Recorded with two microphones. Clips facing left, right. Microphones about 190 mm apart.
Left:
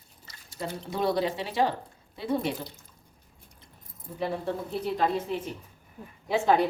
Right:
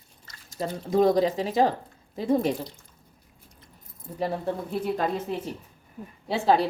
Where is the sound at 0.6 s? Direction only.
45° right (ahead or behind).